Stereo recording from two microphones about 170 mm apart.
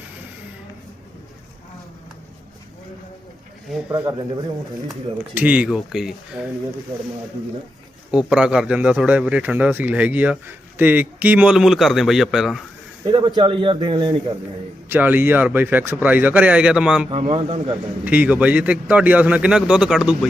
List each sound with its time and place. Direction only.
3.7 s a man's voice: 10° right (ahead or behind)
4.0 s speech: 25° right (ahead or behind)
4.9 s speech: 10° right (ahead or behind)
8.1 s a man's voice: 5° right (ahead or behind)
13.1 s speech: 25° right (ahead or behind)
14.8 s a man's voice: 10° right (ahead or behind)
17.1 s a man's voice: 35° right (ahead or behind)
18.0 s a man's voice: 10° right (ahead or behind)